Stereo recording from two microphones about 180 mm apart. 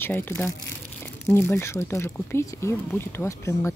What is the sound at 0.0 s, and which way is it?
Speech, 10° left (ahead or behind).